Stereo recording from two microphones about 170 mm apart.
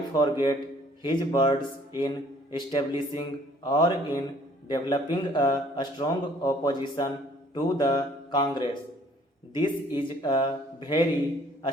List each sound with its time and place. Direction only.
0.1 s speech: 25° left (ahead or behind)